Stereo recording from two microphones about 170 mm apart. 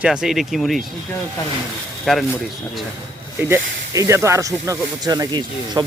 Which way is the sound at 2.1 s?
Centre (ahead or behind).